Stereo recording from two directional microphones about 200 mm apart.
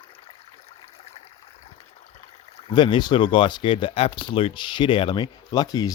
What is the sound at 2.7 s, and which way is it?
Speech, 20° left (ahead or behind).